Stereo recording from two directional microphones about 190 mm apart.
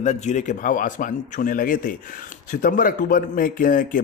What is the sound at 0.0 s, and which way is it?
A man's voice, 40° left (ahead or behind).